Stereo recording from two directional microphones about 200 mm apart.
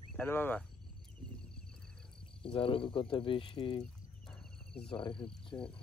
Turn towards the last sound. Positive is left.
turn(degrees=15)  # may be behind; listen again after turning